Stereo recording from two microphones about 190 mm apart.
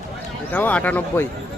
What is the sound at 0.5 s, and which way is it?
Speech, 10° left (ahead or behind).